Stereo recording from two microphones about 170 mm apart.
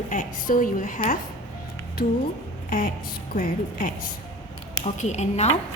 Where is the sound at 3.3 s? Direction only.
55° left (ahead or behind).